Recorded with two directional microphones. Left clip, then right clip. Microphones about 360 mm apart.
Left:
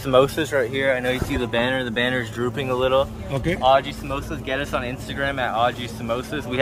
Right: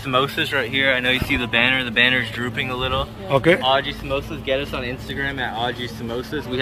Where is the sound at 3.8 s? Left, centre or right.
Left.